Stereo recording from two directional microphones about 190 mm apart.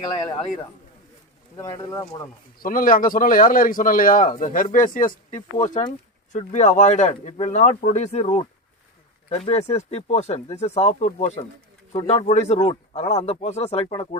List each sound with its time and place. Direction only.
1.6 s speech: 20° left (ahead or behind)
2.6 s a man's voice: 45° left (ahead or behind)
9.5 s speech: 35° left (ahead or behind)